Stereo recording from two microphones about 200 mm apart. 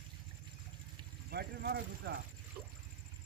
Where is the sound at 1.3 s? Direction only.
55° right (ahead or behind).